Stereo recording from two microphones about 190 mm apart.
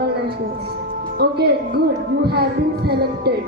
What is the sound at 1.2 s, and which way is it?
A woman's voice, 60° right (ahead or behind).